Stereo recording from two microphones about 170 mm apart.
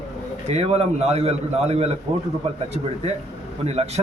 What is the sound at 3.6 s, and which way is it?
Speech, 40° right (ahead or behind).